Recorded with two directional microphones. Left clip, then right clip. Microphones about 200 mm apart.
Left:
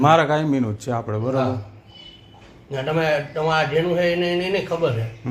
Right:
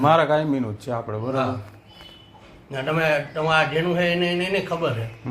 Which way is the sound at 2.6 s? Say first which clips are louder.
Left 1 dB; centre (ahead or behind).